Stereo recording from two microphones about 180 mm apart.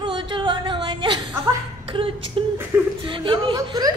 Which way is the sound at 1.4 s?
30° right (ahead or behind).